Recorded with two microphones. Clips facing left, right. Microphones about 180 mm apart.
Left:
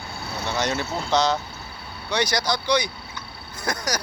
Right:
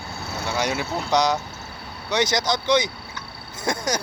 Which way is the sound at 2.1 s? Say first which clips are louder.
Right 2 dB; 20° right (ahead or behind).